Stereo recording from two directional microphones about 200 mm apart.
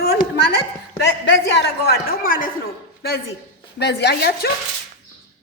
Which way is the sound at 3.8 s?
55° left (ahead or behind).